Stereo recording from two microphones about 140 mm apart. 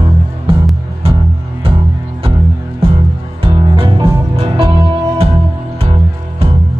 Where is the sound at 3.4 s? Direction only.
40° right (ahead or behind).